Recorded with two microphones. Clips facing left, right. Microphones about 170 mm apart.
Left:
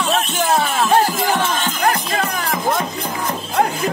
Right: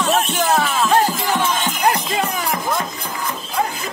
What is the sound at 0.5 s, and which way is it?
Music, 25° left (ahead or behind).